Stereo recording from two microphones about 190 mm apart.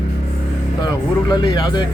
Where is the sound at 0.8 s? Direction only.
20° left (ahead or behind).